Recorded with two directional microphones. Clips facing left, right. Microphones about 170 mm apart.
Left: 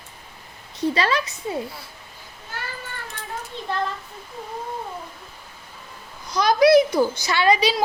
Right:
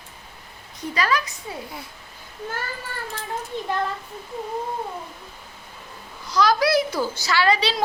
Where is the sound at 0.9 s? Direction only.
30° left (ahead or behind).